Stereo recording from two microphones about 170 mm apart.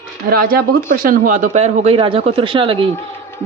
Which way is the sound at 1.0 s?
50° right (ahead or behind).